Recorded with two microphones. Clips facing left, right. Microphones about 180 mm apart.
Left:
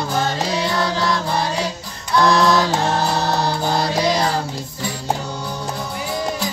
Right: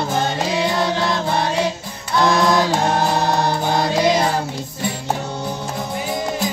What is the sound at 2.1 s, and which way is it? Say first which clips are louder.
Mantra: left 1 dB; 20° right (ahead or behind).